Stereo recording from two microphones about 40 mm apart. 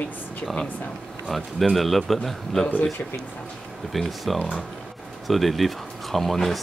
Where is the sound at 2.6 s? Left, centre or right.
Centre.